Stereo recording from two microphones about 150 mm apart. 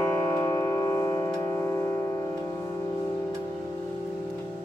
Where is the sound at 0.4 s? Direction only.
25° left (ahead or behind).